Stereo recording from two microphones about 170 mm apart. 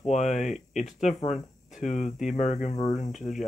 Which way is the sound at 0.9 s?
45° left (ahead or behind).